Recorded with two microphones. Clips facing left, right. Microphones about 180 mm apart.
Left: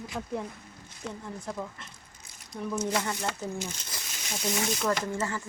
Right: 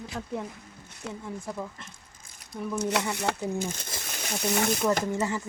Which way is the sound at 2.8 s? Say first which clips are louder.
Right 3 dB; 70° right (ahead or behind).